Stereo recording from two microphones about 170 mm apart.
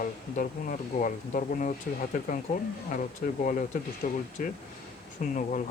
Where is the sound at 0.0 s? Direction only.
50° left (ahead or behind).